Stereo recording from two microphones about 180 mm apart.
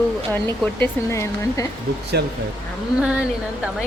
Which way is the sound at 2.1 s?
65° right (ahead or behind).